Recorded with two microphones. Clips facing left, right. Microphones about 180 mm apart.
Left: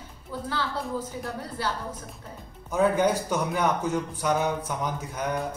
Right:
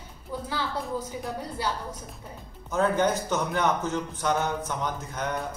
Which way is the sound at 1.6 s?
15° right (ahead or behind).